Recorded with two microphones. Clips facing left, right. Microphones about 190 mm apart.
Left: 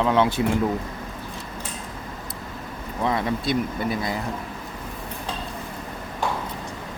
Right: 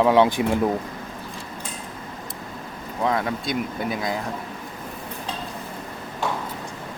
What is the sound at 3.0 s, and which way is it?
Speech, centre (ahead or behind).